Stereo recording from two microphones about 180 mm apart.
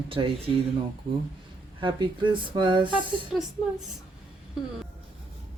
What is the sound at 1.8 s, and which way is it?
Speech, 25° right (ahead or behind).